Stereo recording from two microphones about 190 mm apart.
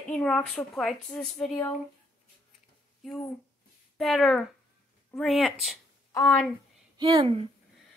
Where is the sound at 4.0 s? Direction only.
Centre (ahead or behind).